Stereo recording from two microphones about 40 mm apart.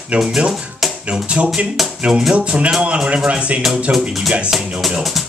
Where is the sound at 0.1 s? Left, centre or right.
Right.